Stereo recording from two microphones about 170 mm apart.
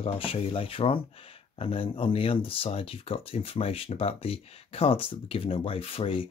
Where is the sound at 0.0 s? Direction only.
35° left (ahead or behind).